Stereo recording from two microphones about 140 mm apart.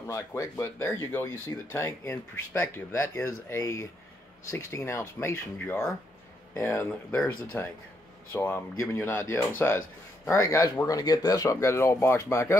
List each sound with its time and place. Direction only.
0.1 s speech: 20° left (ahead or behind)